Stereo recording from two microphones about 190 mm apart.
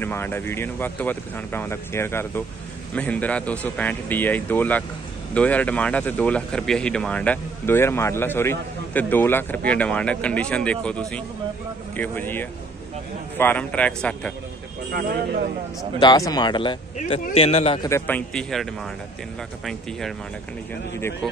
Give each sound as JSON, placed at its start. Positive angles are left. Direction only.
{"t": 0.0, "sound": "speech", "side_deg": 10}
{"t": 14.9, "sound": "speech", "side_deg": -50}
{"t": 16.0, "sound": "a man's voice", "side_deg": 20}
{"t": 17.8, "sound": "a man's voice", "side_deg": 10}